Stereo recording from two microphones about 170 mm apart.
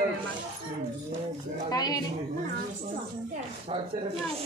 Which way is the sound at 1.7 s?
20° left (ahead or behind).